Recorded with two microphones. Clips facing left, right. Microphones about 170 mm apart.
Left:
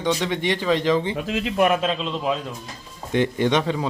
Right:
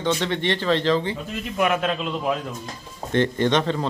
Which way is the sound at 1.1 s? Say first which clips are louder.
Left 6 dB; 90° left.